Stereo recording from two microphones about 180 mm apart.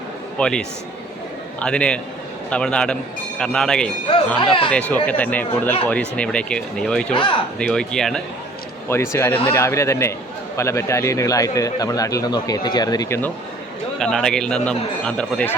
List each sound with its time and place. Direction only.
0.3 s a man's voice: 5° left (ahead or behind)
4.4 s a man's voice: 30° left (ahead or behind)
4.7 s a man's voice: 10° left (ahead or behind)
7.1 s a man's voice: 30° left (ahead or behind)
7.6 s a man's voice: 5° left (ahead or behind)
8.9 s a man's voice: 15° left (ahead or behind)
14.0 s a man's voice: 5° left (ahead or behind)